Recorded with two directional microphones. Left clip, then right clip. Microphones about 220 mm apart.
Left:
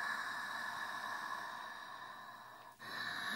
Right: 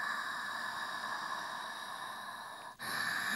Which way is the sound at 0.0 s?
15° right (ahead or behind).